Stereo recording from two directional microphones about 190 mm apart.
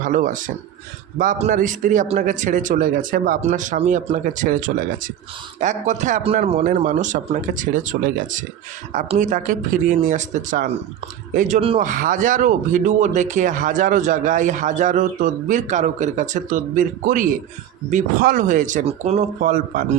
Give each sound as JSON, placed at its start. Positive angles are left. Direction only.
{"t": 0.0, "sound": "speech", "side_deg": -40}
{"t": 11.8, "sound": "speech", "side_deg": -45}